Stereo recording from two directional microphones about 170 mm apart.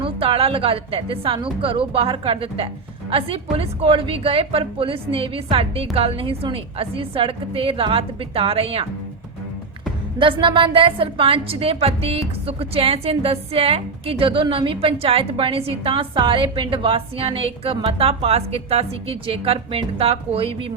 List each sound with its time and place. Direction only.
0.0 s a woman's voice: 30° right (ahead or behind)
10.2 s a woman's voice: 30° right (ahead or behind)